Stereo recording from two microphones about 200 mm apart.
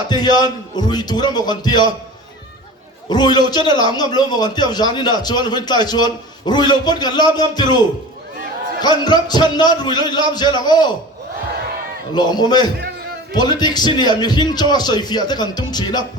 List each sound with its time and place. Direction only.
0.1 s a man's voice: 20° left (ahead or behind)
3.1 s a man's voice: 20° left (ahead or behind)
8.8 s a man's voice: 20° left (ahead or behind)
12.1 s a man's voice: 20° left (ahead or behind)